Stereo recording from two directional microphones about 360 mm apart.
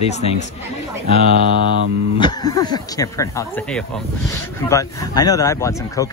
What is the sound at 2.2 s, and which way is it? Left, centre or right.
Speech, centre.